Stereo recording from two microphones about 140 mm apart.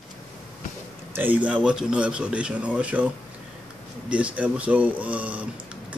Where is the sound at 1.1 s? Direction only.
10° right (ahead or behind).